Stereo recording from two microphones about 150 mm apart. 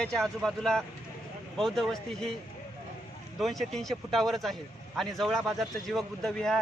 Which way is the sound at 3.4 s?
Centre (ahead or behind).